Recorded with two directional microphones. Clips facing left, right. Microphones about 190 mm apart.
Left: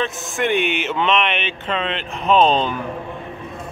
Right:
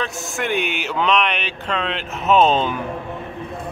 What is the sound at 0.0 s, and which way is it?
Speech, centre (ahead or behind).